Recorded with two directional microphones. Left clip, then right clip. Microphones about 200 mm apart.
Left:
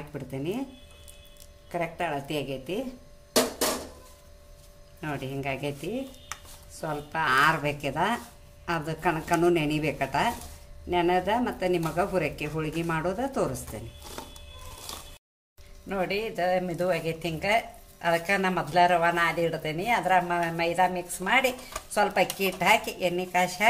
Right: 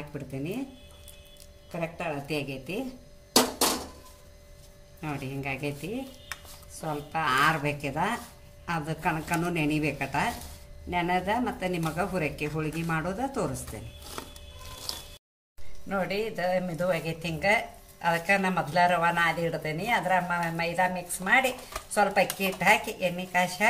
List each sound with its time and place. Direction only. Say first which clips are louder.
1.7 s speech: left 3 dB; 25° left (ahead or behind)
5.0 s speech: left 2 dB; 20° left (ahead or behind)
6.8 s speech: left 1 dB; 20° left (ahead or behind)
15.9 s speech: even; 15° left (ahead or behind)